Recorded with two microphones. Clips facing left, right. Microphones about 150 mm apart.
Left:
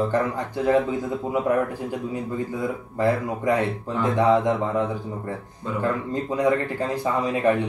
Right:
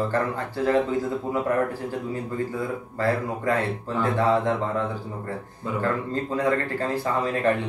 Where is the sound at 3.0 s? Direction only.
15° left (ahead or behind).